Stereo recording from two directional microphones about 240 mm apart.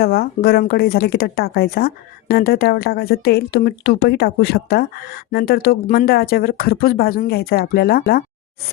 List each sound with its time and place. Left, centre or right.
0.0 s speech: left